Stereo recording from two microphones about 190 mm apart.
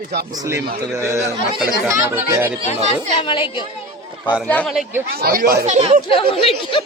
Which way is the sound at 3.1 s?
25° left (ahead or behind).